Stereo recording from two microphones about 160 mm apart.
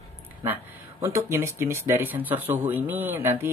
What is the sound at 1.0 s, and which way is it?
Speech, 15° right (ahead or behind).